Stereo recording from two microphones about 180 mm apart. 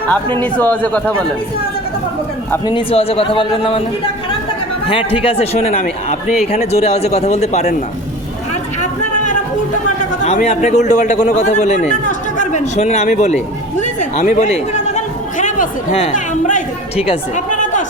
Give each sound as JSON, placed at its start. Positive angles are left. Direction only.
{"t": 0.3, "sound": "a man's voice", "side_deg": 10}
{"t": 2.5, "sound": "a man's voice", "side_deg": 25}
{"t": 4.9, "sound": "a man's voice", "side_deg": 30}
{"t": 10.2, "sound": "a man's voice", "side_deg": 40}
{"t": 16.0, "sound": "chatter", "side_deg": 45}
{"t": 17.0, "sound": "speech", "side_deg": 35}